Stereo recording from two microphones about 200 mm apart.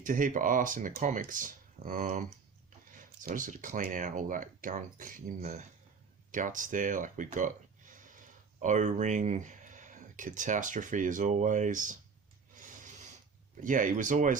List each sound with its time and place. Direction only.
0.0 s speech: 40° right (ahead or behind)
12.5 s snort: 40° right (ahead or behind)
13.7 s speech: 40° right (ahead or behind)